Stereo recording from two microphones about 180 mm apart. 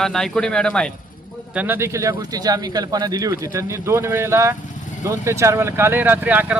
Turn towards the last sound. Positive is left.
turn(degrees=-10)  # may be behind; listen again after turning